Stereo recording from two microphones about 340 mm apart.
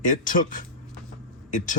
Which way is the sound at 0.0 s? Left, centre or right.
Left.